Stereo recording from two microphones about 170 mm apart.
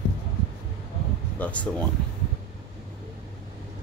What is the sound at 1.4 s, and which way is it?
Speech, 10° left (ahead or behind).